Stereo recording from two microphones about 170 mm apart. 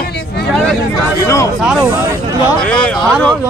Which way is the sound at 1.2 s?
15° left (ahead or behind).